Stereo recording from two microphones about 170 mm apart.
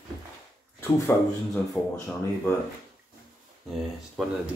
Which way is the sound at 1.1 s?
15° left (ahead or behind).